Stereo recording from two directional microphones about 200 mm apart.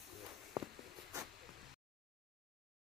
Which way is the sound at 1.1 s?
15° right (ahead or behind).